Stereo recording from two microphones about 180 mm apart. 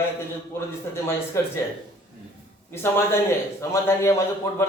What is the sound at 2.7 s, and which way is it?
A man's voice, 15° left (ahead or behind).